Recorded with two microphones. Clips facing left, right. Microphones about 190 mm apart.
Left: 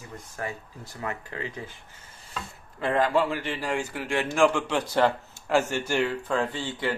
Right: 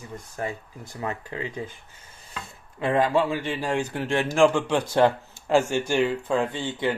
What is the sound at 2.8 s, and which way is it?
Speech, 15° right (ahead or behind).